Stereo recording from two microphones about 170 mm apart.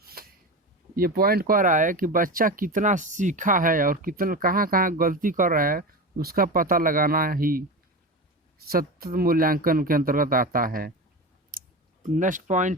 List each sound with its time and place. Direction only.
0.0 s a sound: 60° right (ahead or behind)
0.9 s speech: 60° right (ahead or behind)
8.6 s speech: 60° right (ahead or behind)
11.5 s clicking: 55° right (ahead or behind)
12.0 s speech: 50° right (ahead or behind)